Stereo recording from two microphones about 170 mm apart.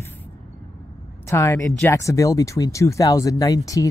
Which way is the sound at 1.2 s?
15° left (ahead or behind).